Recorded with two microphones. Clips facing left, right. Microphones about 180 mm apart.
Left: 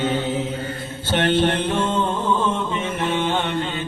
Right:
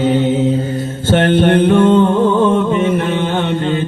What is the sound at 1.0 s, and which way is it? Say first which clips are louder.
Music: right 7 dB; 50° right (ahead or behind).